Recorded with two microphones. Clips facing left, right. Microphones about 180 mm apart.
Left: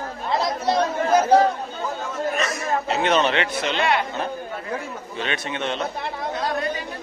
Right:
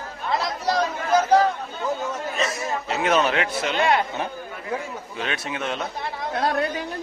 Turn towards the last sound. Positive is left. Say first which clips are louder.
# right 2 dB
turn(degrees=-60)  # may be behind; listen again after turning